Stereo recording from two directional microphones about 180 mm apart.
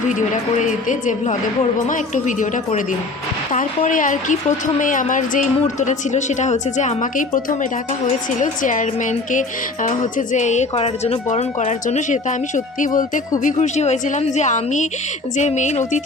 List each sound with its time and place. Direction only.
0.1 s a woman's voice: 45° left (ahead or behind)
3.8 s a woman's voice: 45° left (ahead or behind)